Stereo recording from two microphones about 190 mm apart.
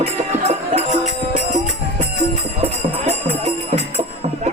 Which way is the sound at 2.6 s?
35° right (ahead or behind).